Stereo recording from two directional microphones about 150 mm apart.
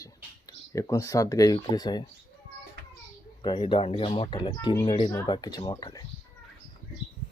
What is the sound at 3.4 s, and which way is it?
Speech, 30° left (ahead or behind).